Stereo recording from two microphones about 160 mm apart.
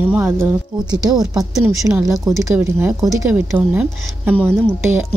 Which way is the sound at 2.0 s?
20° right (ahead or behind).